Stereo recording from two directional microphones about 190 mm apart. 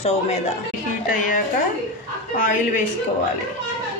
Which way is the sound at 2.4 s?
40° left (ahead or behind).